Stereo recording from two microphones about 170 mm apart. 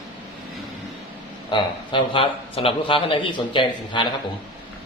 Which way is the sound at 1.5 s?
30° left (ahead or behind).